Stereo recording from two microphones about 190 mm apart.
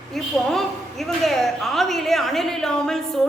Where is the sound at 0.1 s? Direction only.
Centre (ahead or behind).